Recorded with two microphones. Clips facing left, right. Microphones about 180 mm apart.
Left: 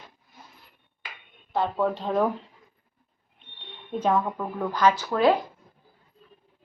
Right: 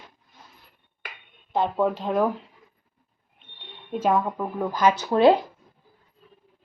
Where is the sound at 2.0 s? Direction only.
5° right (ahead or behind).